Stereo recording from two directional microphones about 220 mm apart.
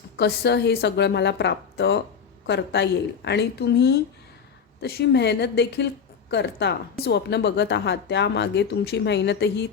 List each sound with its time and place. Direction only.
0.2 s a woman's voice: 50° left (ahead or behind)